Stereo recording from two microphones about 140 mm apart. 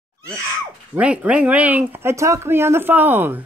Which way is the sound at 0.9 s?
10° right (ahead or behind).